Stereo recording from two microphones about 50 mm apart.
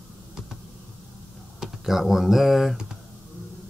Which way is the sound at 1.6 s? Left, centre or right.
Centre.